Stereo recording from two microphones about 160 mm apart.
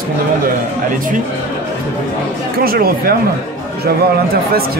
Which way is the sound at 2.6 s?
70° right (ahead or behind).